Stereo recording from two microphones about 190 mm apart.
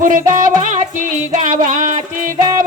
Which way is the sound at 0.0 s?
45° right (ahead or behind).